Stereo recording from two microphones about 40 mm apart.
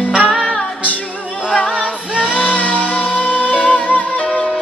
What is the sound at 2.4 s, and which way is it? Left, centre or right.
Music, left.